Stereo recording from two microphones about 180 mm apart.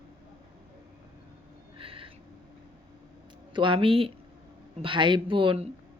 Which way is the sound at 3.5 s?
25° right (ahead or behind).